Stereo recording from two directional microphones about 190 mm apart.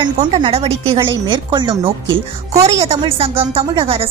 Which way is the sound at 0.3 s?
30° right (ahead or behind).